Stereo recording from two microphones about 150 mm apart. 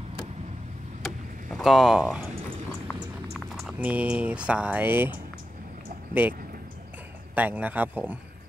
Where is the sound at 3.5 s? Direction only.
Centre (ahead or behind).